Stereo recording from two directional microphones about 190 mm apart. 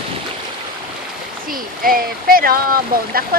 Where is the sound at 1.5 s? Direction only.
50° right (ahead or behind).